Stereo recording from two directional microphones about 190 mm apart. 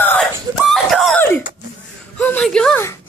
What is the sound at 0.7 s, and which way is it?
Screaming, centre (ahead or behind).